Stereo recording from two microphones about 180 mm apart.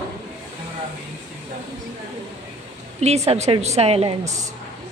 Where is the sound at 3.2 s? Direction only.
35° right (ahead or behind).